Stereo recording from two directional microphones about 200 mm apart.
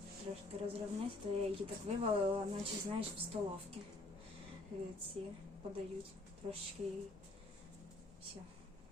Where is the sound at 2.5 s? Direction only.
30° right (ahead or behind).